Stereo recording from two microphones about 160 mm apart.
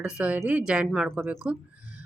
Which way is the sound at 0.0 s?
5° right (ahead or behind).